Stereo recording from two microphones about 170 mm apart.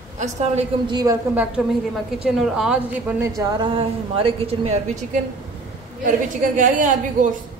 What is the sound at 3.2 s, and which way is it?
A woman's voice, 20° right (ahead or behind).